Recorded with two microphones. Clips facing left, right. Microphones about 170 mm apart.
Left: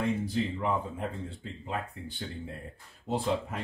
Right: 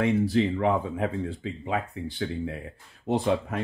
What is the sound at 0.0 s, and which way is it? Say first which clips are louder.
Speech: right 7 dB; 85° right.